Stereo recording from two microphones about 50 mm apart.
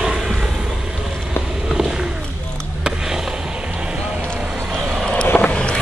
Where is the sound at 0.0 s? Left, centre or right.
Centre.